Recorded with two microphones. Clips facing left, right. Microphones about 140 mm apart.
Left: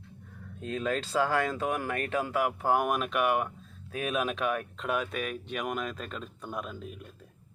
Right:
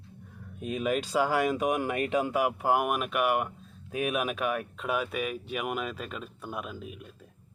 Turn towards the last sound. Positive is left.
turn(degrees=-5)  # may be behind; listen again after turning